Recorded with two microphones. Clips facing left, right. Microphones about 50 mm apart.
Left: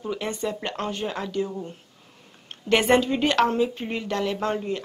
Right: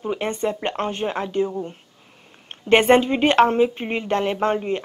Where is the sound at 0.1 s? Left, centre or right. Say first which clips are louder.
Right 4 dB; right.